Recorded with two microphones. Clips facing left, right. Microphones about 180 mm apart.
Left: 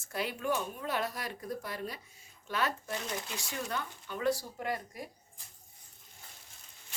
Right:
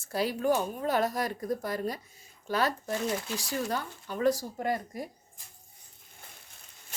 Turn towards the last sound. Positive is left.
turn(degrees=-45)  # may be behind; listen again after turning